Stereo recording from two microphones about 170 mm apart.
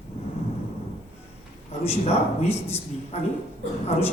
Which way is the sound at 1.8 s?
35° left (ahead or behind).